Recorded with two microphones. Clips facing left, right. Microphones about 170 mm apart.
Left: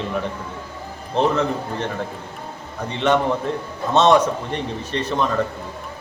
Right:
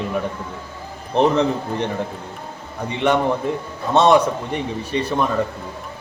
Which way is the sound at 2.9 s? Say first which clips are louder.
Right 1 dB; 15° right (ahead or behind).